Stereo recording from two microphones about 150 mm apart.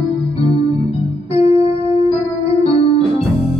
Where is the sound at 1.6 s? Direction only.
40° left (ahead or behind).